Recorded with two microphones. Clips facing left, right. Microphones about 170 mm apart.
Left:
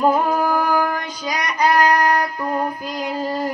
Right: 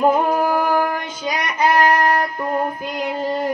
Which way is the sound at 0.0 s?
20° right (ahead or behind).